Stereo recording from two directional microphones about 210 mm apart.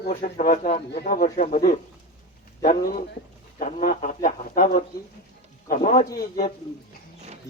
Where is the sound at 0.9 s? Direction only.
45° left (ahead or behind).